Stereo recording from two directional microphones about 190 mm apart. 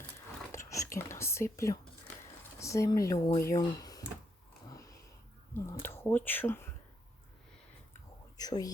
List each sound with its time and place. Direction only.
0.5 s whispering: 15° left (ahead or behind)
2.6 s speech: 15° left (ahead or behind)
4.7 s sniff: 15° left (ahead or behind)
5.5 s speech: 15° left (ahead or behind)
8.4 s a sound: 20° left (ahead or behind)